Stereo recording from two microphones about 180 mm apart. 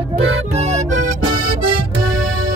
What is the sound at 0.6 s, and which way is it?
Music, 40° right (ahead or behind).